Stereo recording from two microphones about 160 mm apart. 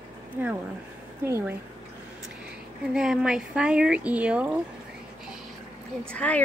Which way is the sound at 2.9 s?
5° right (ahead or behind).